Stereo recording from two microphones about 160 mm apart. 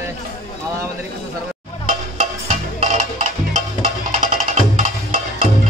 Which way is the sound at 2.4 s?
45° right (ahead or behind).